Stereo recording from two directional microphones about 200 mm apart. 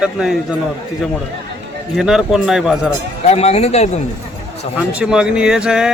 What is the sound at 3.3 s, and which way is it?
Speech, 30° left (ahead or behind).